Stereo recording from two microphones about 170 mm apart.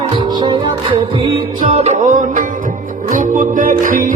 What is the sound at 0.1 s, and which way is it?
Music, 25° right (ahead or behind).